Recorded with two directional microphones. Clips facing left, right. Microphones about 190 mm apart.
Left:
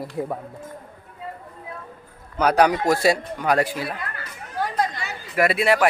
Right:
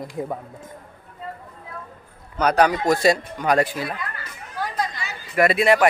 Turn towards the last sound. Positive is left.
turn(degrees=5)  # may be behind; listen again after turning